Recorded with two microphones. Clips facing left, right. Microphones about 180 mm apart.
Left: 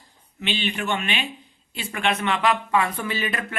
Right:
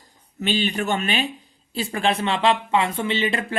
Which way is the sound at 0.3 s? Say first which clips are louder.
Right 4 dB; 40° right (ahead or behind).